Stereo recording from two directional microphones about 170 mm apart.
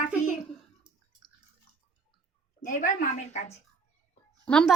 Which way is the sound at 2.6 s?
50° left (ahead or behind).